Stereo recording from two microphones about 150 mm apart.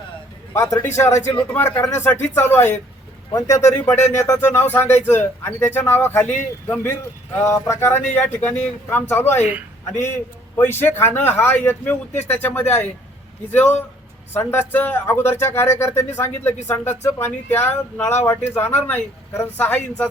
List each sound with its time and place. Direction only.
0.5 s speech: 20° left (ahead or behind)
10.6 s speech: 15° left (ahead or behind)